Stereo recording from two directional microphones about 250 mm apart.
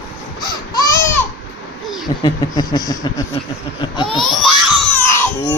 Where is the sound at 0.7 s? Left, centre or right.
Centre.